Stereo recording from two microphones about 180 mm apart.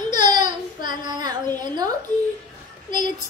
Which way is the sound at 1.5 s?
20° right (ahead or behind).